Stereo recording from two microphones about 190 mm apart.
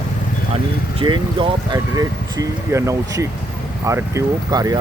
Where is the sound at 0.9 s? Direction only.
25° right (ahead or behind).